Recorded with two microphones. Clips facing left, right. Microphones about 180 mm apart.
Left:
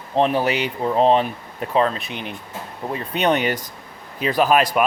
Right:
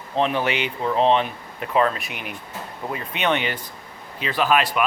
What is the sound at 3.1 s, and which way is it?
Speech, 40° left (ahead or behind).